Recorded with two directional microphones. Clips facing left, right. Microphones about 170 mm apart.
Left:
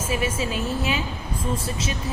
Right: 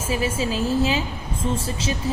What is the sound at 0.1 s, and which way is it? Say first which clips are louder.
A man's voice: right 3 dB; 30° right (ahead or behind).